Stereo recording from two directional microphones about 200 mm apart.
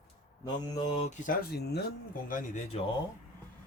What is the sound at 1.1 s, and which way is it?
Speech, 45° left (ahead or behind).